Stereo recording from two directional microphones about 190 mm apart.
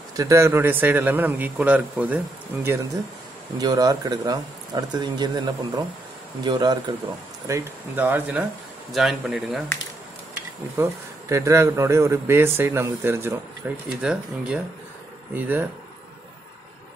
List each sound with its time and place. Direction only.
0.1 s a man's voice: 15° right (ahead or behind); by 9.6 s centre (ahead or behind)
10.8 s a man's voice: 15° right (ahead or behind)